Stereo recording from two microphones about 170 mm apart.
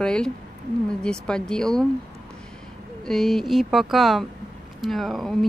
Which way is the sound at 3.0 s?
Centre (ahead or behind).